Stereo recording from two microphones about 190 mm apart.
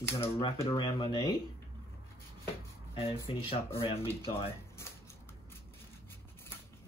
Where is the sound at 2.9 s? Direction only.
30° left (ahead or behind).